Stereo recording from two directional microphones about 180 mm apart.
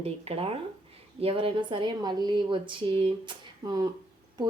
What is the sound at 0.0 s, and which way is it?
A woman's voice, 35° right (ahead or behind).